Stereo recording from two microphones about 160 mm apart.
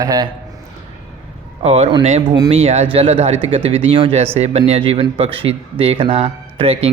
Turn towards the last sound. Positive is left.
turn(degrees=-40)  # may be behind; listen again after turning